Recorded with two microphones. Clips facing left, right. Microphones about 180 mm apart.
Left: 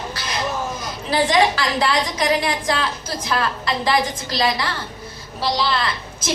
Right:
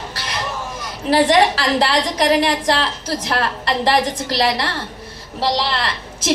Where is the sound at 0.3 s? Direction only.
70° right (ahead or behind).